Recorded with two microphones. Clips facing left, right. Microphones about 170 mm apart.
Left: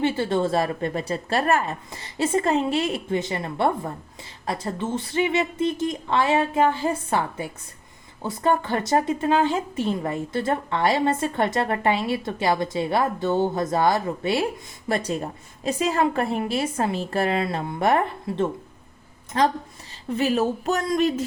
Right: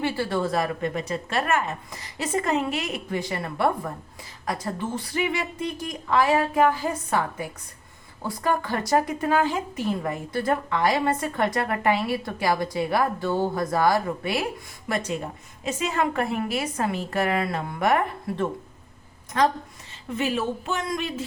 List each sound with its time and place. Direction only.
0.0 s speech: 20° left (ahead or behind)
15.6 s speech: 35° left (ahead or behind)